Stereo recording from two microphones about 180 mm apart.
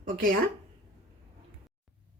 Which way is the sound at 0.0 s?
50° right (ahead or behind).